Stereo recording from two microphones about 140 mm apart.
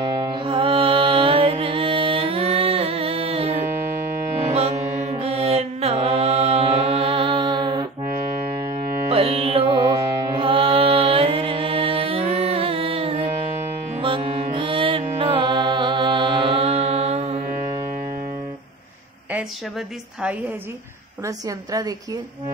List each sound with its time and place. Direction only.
0.0 s music: 35° right (ahead or behind)
9.1 s music: 40° right (ahead or behind)
21.5 s a woman's voice: 25° right (ahead or behind)